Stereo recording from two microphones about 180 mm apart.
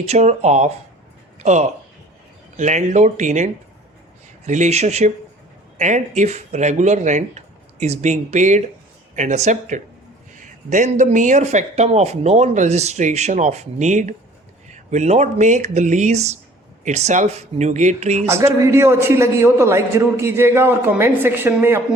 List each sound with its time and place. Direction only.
0.1 s speech: 40° right (ahead or behind)
18.3 s a man's voice: 15° right (ahead or behind)